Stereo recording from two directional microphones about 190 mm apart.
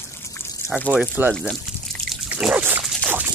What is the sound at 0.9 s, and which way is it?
Speech, 10° right (ahead or behind).